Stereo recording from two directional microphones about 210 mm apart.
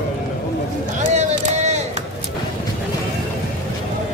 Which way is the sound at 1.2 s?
30° right (ahead or behind).